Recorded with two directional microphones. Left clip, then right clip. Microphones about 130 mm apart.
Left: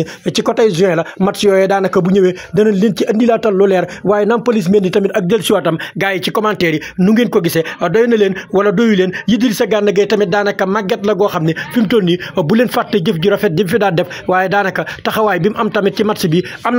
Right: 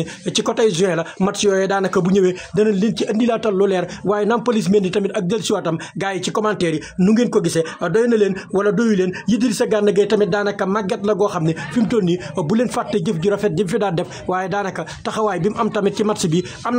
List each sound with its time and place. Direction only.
0.0 s speech: 50° left (ahead or behind); by 16.4 s 15° left (ahead or behind)